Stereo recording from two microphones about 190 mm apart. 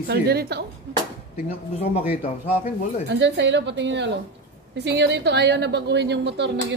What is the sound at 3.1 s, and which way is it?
A woman's voice, 70° right (ahead or behind).